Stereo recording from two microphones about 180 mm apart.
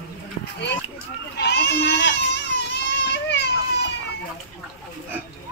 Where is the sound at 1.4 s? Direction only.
65° left (ahead or behind).